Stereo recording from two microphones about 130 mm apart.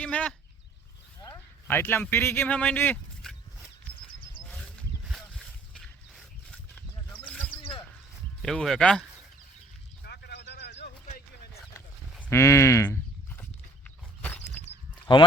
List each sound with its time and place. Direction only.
0.0 s speech: 10° left (ahead or behind)
1.6 s speech: 15° left (ahead or behind)
4.4 s a sound: 5° left (ahead or behind)
8.4 s speech: 5° left (ahead or behind)
12.3 s livestock: 20° left (ahead or behind)
14.2 s a sound: 10° left (ahead or behind)
15.1 s speech: 40° left (ahead or behind)